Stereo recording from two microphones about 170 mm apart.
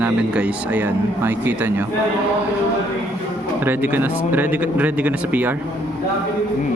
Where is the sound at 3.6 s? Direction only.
10° right (ahead or behind).